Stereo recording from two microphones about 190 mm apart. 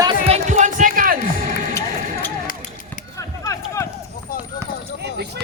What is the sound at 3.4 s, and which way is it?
Run, 15° left (ahead or behind).